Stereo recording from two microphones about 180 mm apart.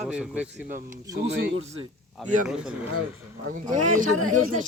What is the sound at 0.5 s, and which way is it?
Speech, 45° right (ahead or behind).